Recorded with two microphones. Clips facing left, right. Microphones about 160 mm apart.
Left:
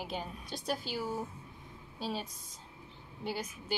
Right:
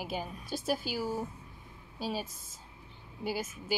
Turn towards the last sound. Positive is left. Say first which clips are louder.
# right 3 dB
turn(degrees=-5)  # may be behind; listen again after turning